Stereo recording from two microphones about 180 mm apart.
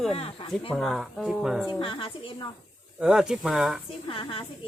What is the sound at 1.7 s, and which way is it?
Speech, 30° left (ahead or behind).